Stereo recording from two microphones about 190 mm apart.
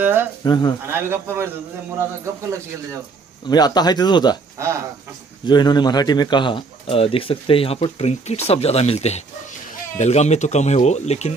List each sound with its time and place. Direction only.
0.0 s speech: 10° right (ahead or behind)
0.4 s a man's voice: 20° left (ahead or behind)
0.8 s speech: 10° right (ahead or behind)
3.4 s a man's voice: 20° left (ahead or behind)
4.6 s speech: 15° right (ahead or behind)
5.4 s a man's voice: 25° left (ahead or behind)